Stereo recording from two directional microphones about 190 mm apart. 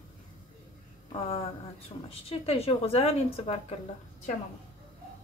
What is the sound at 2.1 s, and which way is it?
A woman's voice, 30° left (ahead or behind).